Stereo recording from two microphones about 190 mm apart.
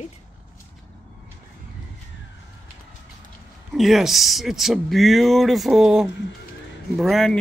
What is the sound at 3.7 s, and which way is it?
Speech, centre (ahead or behind).